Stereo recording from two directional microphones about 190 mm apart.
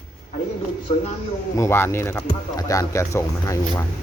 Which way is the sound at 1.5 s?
15° left (ahead or behind).